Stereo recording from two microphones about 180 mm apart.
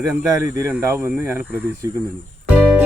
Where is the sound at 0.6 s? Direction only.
15° right (ahead or behind).